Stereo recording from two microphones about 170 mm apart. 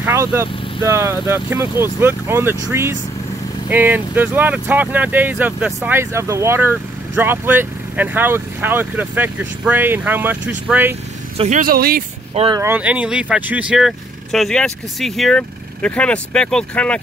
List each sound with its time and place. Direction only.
0.0 s speech: 15° right (ahead or behind)
11.3 s speech: 45° right (ahead or behind)
12.5 s speech: 10° right (ahead or behind); by 17.0 s 5° left (ahead or behind)